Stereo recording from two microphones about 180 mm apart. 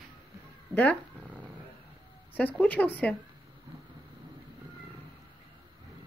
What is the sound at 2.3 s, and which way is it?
Speech, 10° left (ahead or behind).